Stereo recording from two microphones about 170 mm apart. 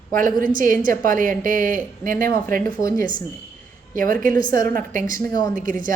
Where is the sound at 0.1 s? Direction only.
55° right (ahead or behind).